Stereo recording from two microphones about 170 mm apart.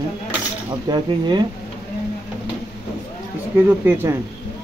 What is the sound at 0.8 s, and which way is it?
Cutlery, 25° right (ahead or behind).